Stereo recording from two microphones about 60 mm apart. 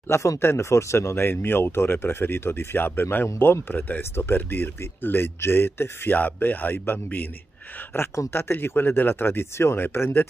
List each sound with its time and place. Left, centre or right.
0.1 s speech: left
1.2 s speech: left
7.9 s speech: left